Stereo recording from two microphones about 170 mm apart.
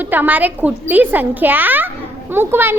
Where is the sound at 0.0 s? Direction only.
10° right (ahead or behind).